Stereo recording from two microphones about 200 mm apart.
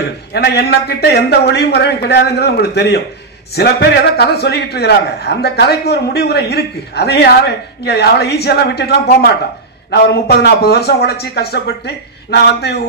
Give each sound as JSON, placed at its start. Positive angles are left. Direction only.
{"t": 0.3, "sound": "a man's voice", "side_deg": 55}